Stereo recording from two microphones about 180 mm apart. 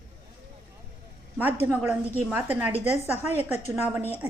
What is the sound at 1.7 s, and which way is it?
A woman's voice, 10° right (ahead or behind).